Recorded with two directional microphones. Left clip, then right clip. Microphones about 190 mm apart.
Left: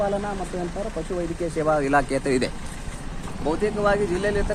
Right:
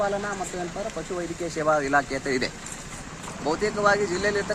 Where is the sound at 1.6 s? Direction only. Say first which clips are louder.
Left 1 dB; 25° left (ahead or behind).